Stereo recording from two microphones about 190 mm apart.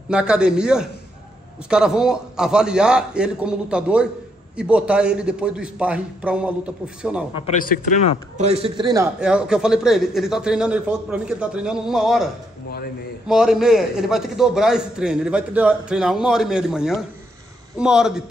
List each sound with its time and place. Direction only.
0.1 s a man's voice: 5° right (ahead or behind)
7.6 s speech: 50° left (ahead or behind)
8.4 s a man's voice: 35° right (ahead or behind)
9.2 s a man's voice: 5° right (ahead or behind)
13.3 s a man's voice: 5° right (ahead or behind)